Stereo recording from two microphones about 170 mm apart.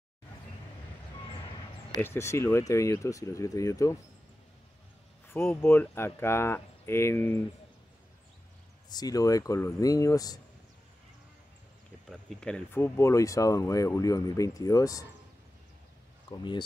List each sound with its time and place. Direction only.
2.0 s speech: 15° left (ahead or behind)
5.3 s speech: 15° left (ahead or behind)
8.8 s speech: 20° left (ahead or behind)
12.1 s speech: 5° left (ahead or behind); by 15.0 s 20° left (ahead or behind)
16.3 s speech: 25° left (ahead or behind)